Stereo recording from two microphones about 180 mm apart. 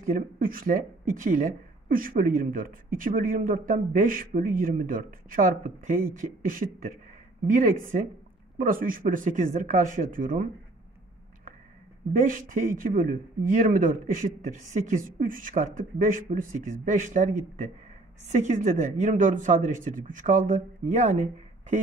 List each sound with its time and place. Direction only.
0.0 s speech: 50° right (ahead or behind)
12.1 s speech: 50° right (ahead or behind)